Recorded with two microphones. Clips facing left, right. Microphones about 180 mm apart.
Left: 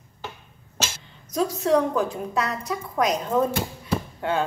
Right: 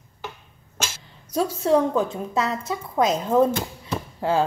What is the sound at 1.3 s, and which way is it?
A woman's voice, 30° right (ahead or behind).